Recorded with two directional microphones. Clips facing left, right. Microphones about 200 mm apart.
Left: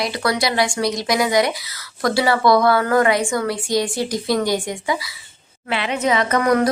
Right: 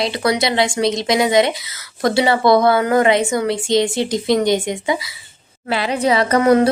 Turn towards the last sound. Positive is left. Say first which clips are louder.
# right 4 dB
turn(degrees=-30)  # may be behind; listen again after turning